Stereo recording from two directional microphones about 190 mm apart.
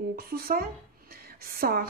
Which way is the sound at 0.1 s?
50° right (ahead or behind).